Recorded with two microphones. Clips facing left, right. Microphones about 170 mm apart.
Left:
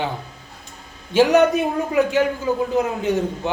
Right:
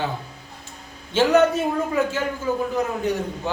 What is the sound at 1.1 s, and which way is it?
A man's voice, 15° left (ahead or behind).